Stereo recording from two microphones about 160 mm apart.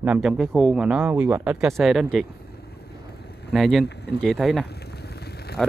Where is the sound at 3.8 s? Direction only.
90° left.